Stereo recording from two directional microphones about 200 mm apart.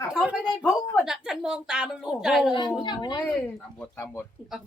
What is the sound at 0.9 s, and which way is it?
A woman's voice, centre (ahead or behind).